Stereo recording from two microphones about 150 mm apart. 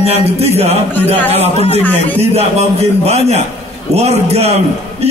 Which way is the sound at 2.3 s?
45° right (ahead or behind).